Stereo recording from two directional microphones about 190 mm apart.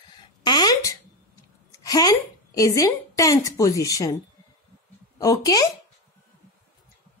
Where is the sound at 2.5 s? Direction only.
15° left (ahead or behind).